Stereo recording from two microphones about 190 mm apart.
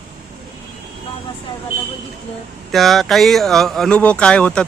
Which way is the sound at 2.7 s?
Centre (ahead or behind).